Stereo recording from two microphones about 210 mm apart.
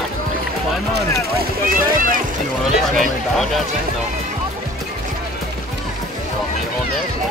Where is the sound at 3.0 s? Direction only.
Centre (ahead or behind).